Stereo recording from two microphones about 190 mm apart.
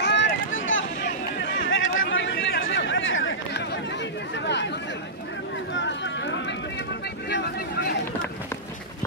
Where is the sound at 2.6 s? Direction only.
75° left (ahead or behind).